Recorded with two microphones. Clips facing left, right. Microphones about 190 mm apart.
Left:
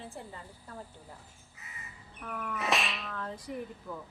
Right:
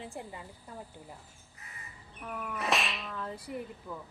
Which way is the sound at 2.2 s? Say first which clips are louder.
Left 1 dB; 10° right (ahead or behind).